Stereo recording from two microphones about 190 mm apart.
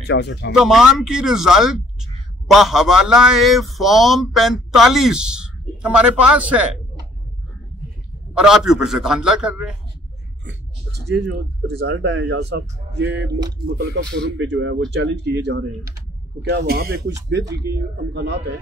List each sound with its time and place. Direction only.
0.0 s speech: 65° left (ahead or behind)
0.6 s speech: centre (ahead or behind)
8.4 s speech: centre (ahead or behind)
10.4 s a sound: 60° right (ahead or behind)
11.8 s speech: 75° right (ahead or behind)